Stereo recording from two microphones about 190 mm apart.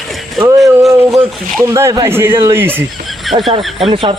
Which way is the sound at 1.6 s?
15° right (ahead or behind).